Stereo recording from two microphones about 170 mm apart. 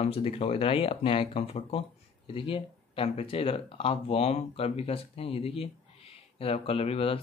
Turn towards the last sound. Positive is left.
turn(degrees=35)  # may be behind; listen again after turning